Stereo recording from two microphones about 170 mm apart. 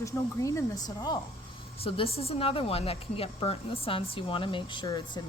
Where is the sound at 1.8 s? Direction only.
35° left (ahead or behind).